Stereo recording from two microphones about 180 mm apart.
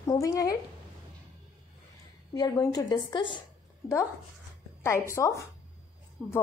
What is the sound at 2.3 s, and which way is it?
A woman's voice, 20° left (ahead or behind).